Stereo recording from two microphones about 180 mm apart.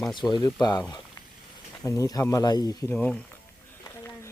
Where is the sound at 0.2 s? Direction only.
20° left (ahead or behind).